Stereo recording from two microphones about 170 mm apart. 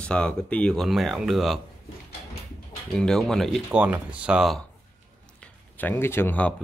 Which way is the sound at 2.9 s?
5° left (ahead or behind).